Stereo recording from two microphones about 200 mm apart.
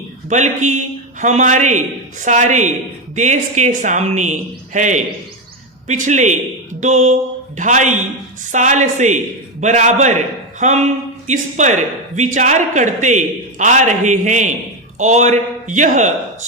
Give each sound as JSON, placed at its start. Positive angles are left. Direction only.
{"t": 0.3, "sound": "speech", "side_deg": -35}